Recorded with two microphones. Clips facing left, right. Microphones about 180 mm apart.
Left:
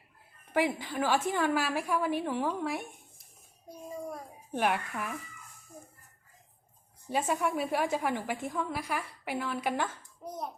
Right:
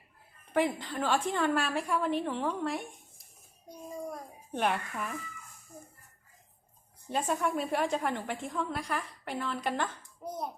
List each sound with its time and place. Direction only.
0.5 s a woman's voice: 5° left (ahead or behind)
7.1 s a woman's voice: 5° left (ahead or behind)